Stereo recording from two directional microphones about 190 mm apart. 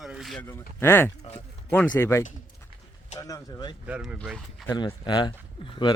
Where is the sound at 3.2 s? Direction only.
20° left (ahead or behind).